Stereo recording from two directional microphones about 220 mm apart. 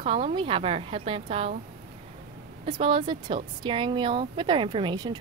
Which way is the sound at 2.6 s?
25° right (ahead or behind).